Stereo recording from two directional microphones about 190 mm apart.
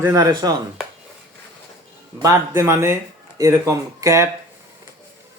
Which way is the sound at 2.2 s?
15° right (ahead or behind).